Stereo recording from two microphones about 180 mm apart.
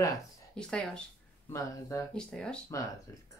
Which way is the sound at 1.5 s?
15° left (ahead or behind).